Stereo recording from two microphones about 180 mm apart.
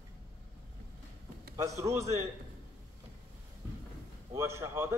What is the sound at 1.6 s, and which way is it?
Speech, 15° right (ahead or behind).